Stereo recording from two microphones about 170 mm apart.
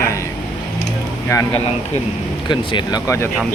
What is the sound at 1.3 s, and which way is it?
Speech, 20° left (ahead or behind).